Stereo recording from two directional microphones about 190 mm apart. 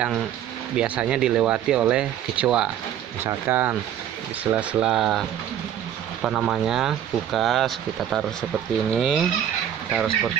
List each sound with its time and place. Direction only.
0.7 s speech: 5° right (ahead or behind)
6.2 s speech: 5° right (ahead or behind)